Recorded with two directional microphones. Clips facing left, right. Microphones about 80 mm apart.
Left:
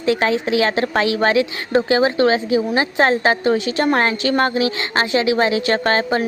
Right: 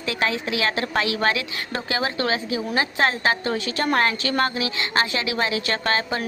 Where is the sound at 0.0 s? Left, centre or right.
Left.